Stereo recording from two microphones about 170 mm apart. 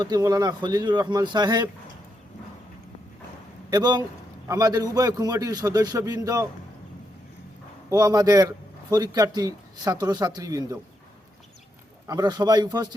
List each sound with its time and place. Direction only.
0.0 s a man's voice: 20° right (ahead or behind)
3.7 s a man's voice: 25° right (ahead or behind)
7.9 s a man's voice: 20° right (ahead or behind)
12.0 s a man's voice: 25° right (ahead or behind)